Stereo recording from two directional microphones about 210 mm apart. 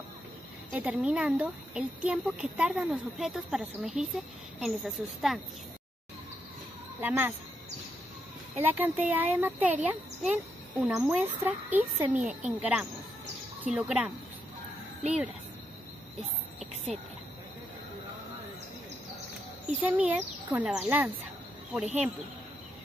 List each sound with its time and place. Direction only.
0.7 s speech: 5° right (ahead or behind)
7.0 s speech: 10° right (ahead or behind)
8.5 s speech: 10° right (ahead or behind)
16.2 s a sound: 30° right (ahead or behind)
19.8 s speech: 5° right (ahead or behind)